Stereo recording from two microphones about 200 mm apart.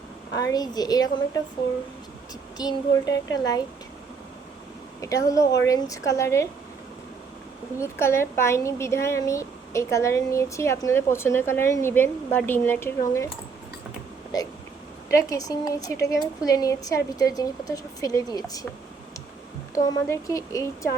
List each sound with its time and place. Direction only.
0.3 s speech: 20° left (ahead or behind)
2.6 s speech: 20° left (ahead or behind)
4.9 s a woman's voice: 15° left (ahead or behind)
7.8 s a woman's voice: 15° left (ahead or behind)
14.3 s a woman's voice: 20° left (ahead or behind)
19.7 s a woman's voice: 15° left (ahead or behind)